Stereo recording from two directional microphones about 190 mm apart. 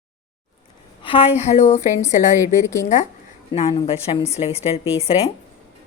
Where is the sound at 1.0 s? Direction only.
30° left (ahead or behind).